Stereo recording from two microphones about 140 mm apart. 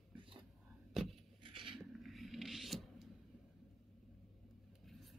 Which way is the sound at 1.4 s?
40° right (ahead or behind).